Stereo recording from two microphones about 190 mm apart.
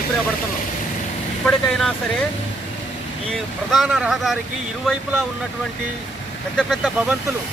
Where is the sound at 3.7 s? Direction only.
Centre (ahead or behind).